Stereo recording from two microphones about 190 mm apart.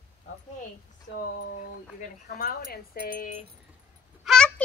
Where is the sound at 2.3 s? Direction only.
50° left (ahead or behind).